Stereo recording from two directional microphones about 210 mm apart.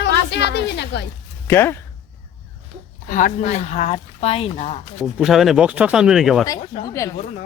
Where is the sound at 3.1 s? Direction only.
40° left (ahead or behind).